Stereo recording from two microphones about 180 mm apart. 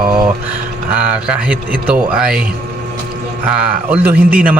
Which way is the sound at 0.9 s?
5° right (ahead or behind).